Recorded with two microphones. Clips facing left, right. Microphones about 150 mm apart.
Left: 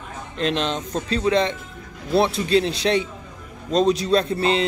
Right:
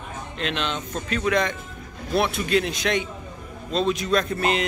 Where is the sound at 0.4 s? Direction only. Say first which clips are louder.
Left 5 dB; 35° left (ahead or behind).